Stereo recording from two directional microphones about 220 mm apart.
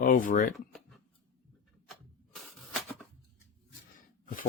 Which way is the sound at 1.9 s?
Centre (ahead or behind).